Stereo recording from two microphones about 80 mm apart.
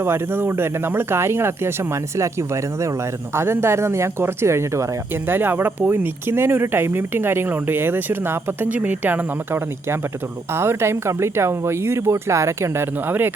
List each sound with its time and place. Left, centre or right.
0.0 s speech: right
3.3 s speech: right
5.3 s speech: right